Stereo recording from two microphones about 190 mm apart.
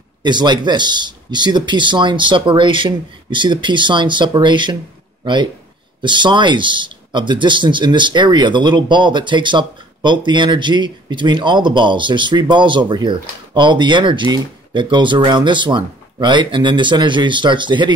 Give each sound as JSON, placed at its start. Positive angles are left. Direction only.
{"t": 0.2, "sound": "speech", "side_deg": -25}